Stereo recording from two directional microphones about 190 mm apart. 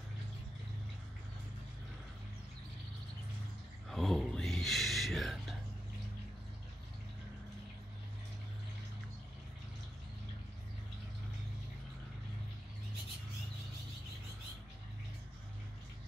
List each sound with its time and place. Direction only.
3.9 s whispering: centre (ahead or behind)